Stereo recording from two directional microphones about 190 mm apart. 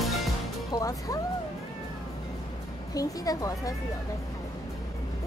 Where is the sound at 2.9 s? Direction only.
20° left (ahead or behind).